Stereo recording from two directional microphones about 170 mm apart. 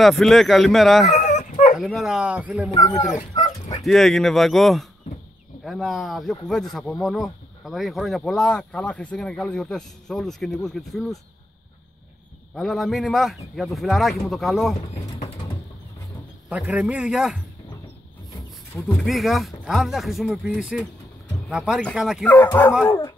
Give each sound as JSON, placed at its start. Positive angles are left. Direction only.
{"t": 0.0, "sound": "speech", "side_deg": 0}
{"t": 1.2, "sound": "dog", "side_deg": 45}
{"t": 1.8, "sound": "speech", "side_deg": 0}
{"t": 3.8, "sound": "speech", "side_deg": 0}
{"t": 12.5, "sound": "speech", "side_deg": 0}
{"t": 14.8, "sound": "pigeon", "side_deg": 40}
{"t": 16.4, "sound": "a man's voice", "side_deg": -10}
{"t": 18.3, "sound": "wild animals", "side_deg": 15}
{"t": 19.0, "sound": "speech", "side_deg": 0}
{"t": 22.2, "sound": "speech", "side_deg": 10}